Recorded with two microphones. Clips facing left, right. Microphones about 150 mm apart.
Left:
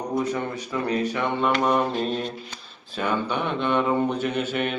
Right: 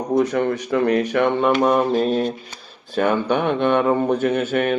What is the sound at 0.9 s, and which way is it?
Speech, 65° right (ahead or behind).